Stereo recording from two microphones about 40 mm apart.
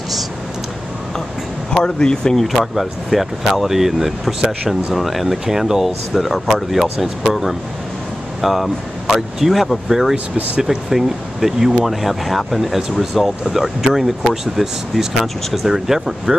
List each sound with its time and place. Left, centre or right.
1.7 s speech: centre
2.3 s speech: centre
10.1 s speech: right
10.6 s speech: centre